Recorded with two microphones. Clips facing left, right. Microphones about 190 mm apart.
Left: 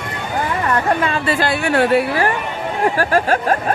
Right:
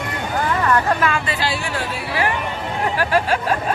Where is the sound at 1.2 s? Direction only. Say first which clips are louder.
Left 6 dB; 50° left (ahead or behind).